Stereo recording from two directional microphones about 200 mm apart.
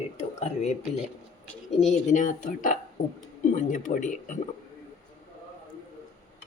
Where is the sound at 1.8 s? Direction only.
35° left (ahead or behind).